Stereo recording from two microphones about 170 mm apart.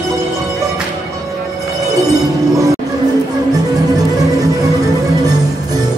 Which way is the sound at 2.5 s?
20° right (ahead or behind).